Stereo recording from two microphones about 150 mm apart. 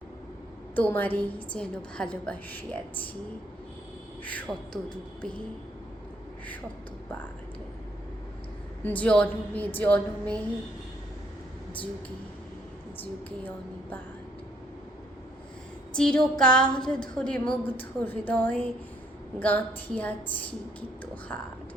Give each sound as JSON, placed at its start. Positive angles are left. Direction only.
{"t": 0.8, "sound": "a woman's voice", "side_deg": 10}
{"t": 4.2, "sound": "a woman's voice", "side_deg": 10}
{"t": 8.8, "sound": "a woman's voice", "side_deg": 10}
{"t": 16.0, "sound": "a woman's voice", "side_deg": 5}